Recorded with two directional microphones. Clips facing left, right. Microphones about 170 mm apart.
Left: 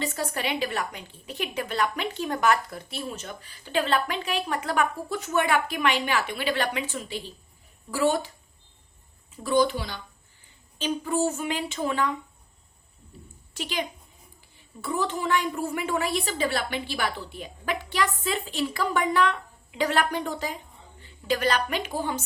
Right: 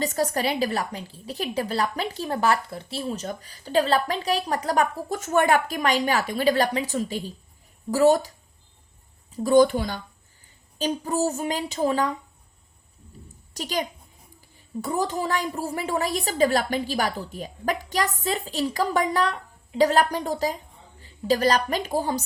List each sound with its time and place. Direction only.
0.0 s speech: 40° right (ahead or behind)
9.3 s speech: 40° right (ahead or behind)
13.5 s a woman's voice: 40° right (ahead or behind)